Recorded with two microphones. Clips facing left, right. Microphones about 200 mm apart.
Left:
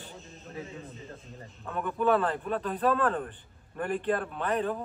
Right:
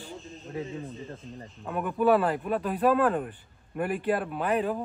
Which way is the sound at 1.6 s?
15° right (ahead or behind).